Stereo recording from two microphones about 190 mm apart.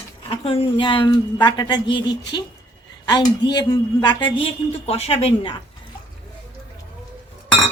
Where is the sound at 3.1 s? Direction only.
25° left (ahead or behind).